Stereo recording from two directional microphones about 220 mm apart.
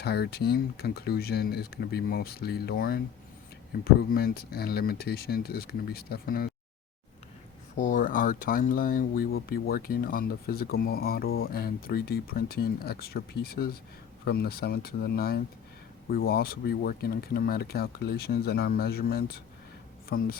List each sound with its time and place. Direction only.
0.0 s speech: 45° left (ahead or behind)
4.1 s speech: 45° left (ahead or behind)
7.8 s speech: 35° left (ahead or behind)